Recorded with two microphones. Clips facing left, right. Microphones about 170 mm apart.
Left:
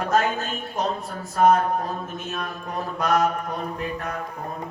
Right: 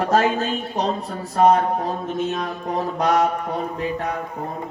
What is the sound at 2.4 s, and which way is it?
Speech, 90° right.